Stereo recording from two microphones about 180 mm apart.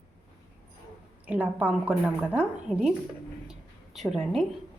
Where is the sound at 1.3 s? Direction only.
10° right (ahead or behind).